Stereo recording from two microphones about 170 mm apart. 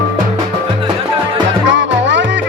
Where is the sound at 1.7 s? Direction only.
90° right.